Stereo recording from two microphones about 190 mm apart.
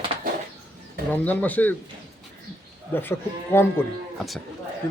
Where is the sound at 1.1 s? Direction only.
10° left (ahead or behind).